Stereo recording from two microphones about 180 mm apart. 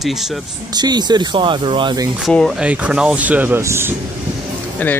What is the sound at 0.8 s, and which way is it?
Speech, 25° right (ahead or behind).